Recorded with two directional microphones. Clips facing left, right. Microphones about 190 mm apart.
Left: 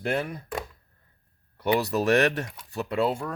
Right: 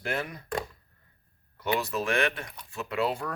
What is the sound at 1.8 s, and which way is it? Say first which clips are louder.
Speech: left 8 dB; 40° left (ahead or behind).